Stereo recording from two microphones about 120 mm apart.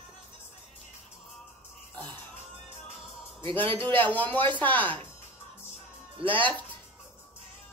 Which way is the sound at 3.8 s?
15° left (ahead or behind).